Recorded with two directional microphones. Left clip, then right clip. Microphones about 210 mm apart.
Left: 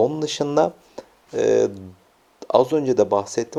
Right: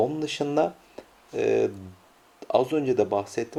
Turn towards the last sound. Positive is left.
turn(degrees=30)  # may be behind; listen again after turning